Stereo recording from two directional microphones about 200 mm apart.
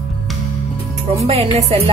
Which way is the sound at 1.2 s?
30° right (ahead or behind).